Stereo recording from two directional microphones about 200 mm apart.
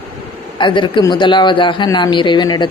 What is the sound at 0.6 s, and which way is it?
A man's voice, 25° left (ahead or behind).